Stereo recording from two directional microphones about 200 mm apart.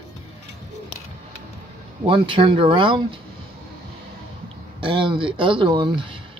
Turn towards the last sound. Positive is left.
turn(degrees=-25)  # may be behind; listen again after turning